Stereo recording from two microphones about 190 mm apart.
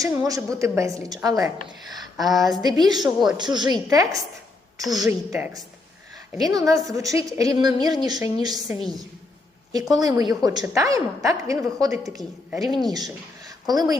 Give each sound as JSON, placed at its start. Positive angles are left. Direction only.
{"t": 0.0, "sound": "a woman's voice", "side_deg": -20}
{"t": 2.1, "sound": "a woman's voice", "side_deg": 0}
{"t": 2.5, "sound": "a woman's voice", "side_deg": -20}
{"t": 9.9, "sound": "a woman's voice", "side_deg": -20}
{"t": 11.9, "sound": "a woman's voice", "side_deg": 0}
{"t": 12.9, "sound": "speech", "side_deg": -20}